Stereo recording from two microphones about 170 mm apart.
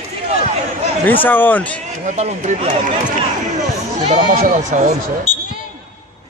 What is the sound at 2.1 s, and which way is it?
Speech, 40° right (ahead or behind).